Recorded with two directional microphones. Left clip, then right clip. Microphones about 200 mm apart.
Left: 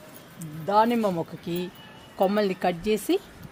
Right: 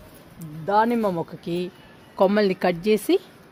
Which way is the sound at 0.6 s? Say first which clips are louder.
Right 1 dB; 35° right (ahead or behind).